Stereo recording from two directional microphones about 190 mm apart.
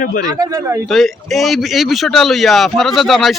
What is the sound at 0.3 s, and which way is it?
Speech, 20° right (ahead or behind).